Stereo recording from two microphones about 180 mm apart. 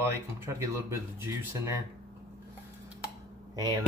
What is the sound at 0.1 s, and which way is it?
Speech, 15° right (ahead or behind).